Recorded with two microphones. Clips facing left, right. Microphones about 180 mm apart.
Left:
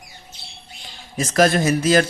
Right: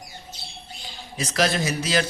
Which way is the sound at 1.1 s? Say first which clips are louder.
Left 7 dB; 50° left (ahead or behind).